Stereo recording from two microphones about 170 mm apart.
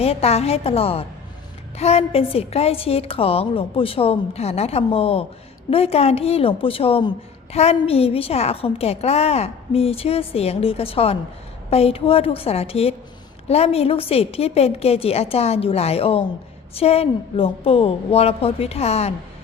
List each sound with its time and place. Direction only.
0.0 s a woman's voice: 35° left (ahead or behind)